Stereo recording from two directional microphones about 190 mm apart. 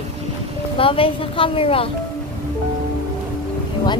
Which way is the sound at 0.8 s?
30° left (ahead or behind).